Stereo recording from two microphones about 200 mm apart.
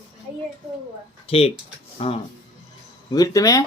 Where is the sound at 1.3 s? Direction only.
30° left (ahead or behind).